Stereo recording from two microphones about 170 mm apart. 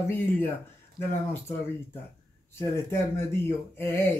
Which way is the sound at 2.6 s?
15° left (ahead or behind).